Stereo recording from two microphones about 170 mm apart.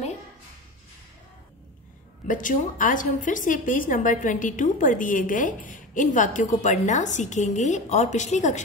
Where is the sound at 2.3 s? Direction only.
50° left (ahead or behind).